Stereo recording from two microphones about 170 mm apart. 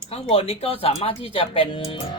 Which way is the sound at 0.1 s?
35° left (ahead or behind).